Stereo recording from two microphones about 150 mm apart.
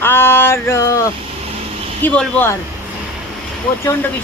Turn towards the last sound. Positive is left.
turn(degrees=20)  # may be behind; listen again after turning